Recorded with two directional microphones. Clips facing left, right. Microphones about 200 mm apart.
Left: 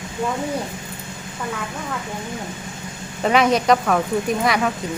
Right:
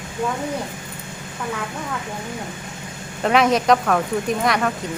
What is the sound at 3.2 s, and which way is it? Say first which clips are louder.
Speech: even; centre (ahead or behind).